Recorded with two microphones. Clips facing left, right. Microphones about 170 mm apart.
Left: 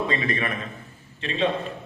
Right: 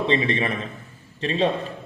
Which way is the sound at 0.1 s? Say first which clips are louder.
Right 4 dB; 25° right (ahead or behind).